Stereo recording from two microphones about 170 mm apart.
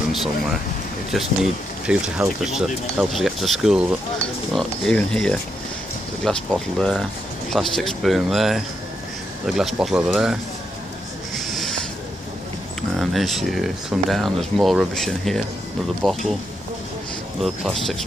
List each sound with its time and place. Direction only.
0.1 s speech: centre (ahead or behind)
11.3 s a sound: centre (ahead or behind)
12.9 s speech: centre (ahead or behind)
17.4 s speech: centre (ahead or behind)